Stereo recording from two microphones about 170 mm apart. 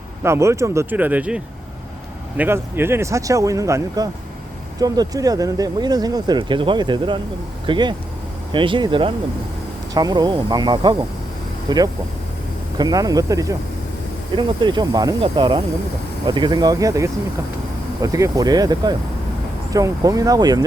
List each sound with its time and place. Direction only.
0.2 s speech: 15° right (ahead or behind)
2.4 s speech: 15° right (ahead or behind)